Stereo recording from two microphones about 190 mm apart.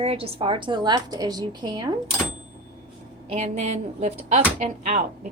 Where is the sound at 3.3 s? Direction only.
35° right (ahead or behind).